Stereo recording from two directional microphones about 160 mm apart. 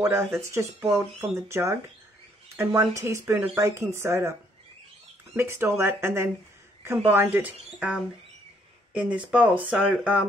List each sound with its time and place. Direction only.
0.0 s speech: 15° right (ahead or behind)